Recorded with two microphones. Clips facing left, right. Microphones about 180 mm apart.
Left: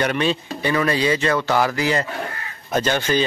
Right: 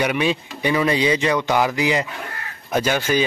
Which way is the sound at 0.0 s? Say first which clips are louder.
Even; 10° right (ahead or behind).